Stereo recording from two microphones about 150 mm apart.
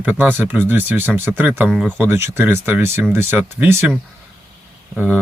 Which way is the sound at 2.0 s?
15° right (ahead or behind).